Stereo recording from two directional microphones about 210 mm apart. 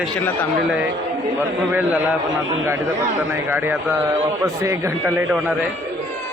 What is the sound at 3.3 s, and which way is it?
A man's voice, 10° right (ahead or behind).